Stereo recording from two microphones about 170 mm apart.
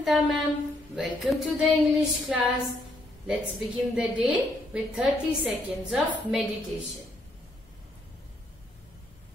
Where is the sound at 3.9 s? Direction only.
5° right (ahead or behind).